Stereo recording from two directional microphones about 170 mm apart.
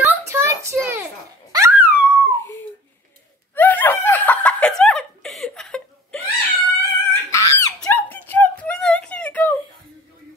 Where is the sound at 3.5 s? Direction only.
10° left (ahead or behind).